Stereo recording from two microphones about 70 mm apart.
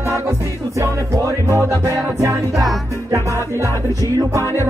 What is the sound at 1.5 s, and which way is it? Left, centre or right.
Music, right.